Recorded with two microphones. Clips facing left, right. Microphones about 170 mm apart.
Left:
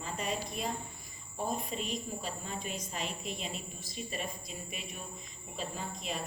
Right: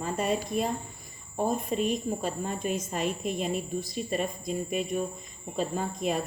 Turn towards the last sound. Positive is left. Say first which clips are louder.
# right 10 dB
turn(degrees=-50)  # may be behind; listen again after turning